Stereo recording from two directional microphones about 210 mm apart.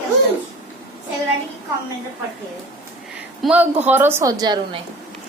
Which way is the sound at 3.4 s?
5° right (ahead or behind).